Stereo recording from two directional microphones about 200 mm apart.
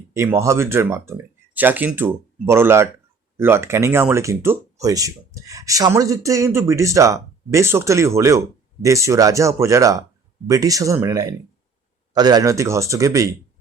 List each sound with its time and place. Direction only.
0.1 s speech: 15° right (ahead or behind)